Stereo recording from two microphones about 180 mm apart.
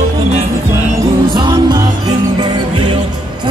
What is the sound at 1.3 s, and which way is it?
Music, 25° right (ahead or behind).